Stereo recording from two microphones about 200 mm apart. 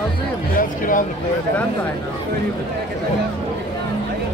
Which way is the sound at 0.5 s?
45° left (ahead or behind).